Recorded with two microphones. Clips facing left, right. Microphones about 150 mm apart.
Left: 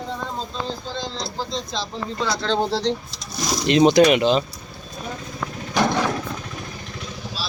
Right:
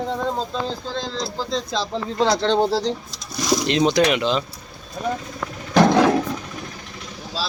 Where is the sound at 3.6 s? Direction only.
10° left (ahead or behind).